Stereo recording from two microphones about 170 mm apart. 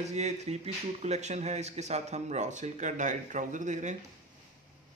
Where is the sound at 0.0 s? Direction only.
40° right (ahead or behind).